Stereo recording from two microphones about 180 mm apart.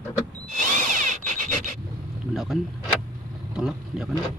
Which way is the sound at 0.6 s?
45° right (ahead or behind).